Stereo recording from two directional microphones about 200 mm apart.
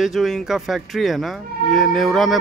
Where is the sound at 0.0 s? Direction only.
Centre (ahead or behind).